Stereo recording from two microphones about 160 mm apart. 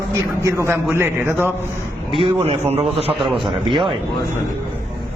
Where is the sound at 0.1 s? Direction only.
20° right (ahead or behind).